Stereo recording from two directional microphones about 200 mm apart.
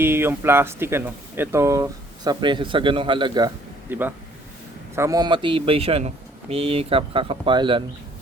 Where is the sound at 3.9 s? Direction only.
10° right (ahead or behind).